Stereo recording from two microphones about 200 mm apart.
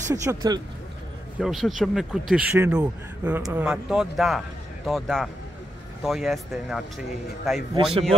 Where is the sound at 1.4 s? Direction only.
Centre (ahead or behind).